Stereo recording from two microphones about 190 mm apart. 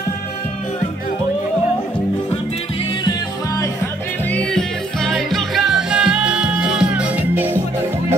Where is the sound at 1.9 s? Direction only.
30° left (ahead or behind).